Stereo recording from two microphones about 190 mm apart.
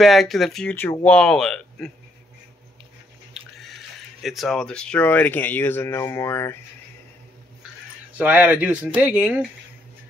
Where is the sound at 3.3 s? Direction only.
Centre (ahead or behind).